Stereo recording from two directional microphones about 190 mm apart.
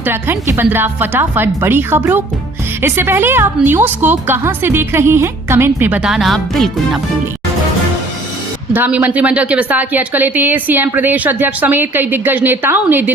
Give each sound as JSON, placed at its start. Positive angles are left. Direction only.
{"t": 0.0, "sound": "a woman's voice", "side_deg": -10}
{"t": 8.7, "sound": "a woman's voice", "side_deg": -10}